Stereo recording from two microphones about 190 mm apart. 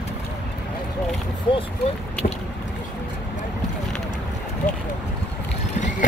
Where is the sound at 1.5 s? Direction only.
25° left (ahead or behind).